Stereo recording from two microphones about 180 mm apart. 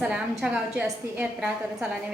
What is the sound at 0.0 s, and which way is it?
A woman's voice, 5° right (ahead or behind).